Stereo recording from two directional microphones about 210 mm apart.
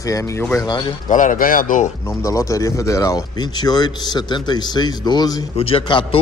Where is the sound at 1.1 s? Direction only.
40° left (ahead or behind).